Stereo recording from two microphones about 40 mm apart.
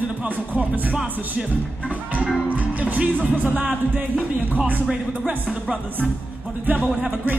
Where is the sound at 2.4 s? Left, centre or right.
Right.